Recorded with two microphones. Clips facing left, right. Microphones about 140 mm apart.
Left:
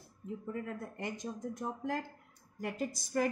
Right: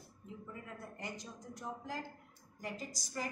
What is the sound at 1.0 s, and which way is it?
A woman's voice, 50° left (ahead or behind).